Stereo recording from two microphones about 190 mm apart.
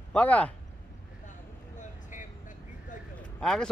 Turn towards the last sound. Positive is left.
turn(degrees=5)  # may be behind; listen again after turning